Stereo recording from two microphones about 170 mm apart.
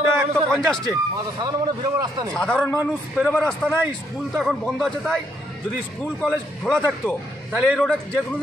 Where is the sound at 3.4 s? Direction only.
5° left (ahead or behind).